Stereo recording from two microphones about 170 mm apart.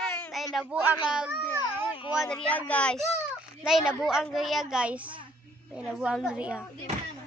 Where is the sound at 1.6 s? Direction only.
30° left (ahead or behind).